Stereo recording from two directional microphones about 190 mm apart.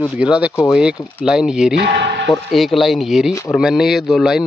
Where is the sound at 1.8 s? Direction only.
60° right (ahead or behind).